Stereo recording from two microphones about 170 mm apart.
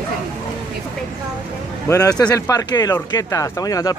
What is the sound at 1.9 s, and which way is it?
Speech, 20° left (ahead or behind).